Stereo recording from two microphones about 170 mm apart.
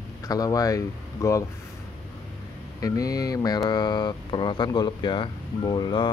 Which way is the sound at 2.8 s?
20° left (ahead or behind).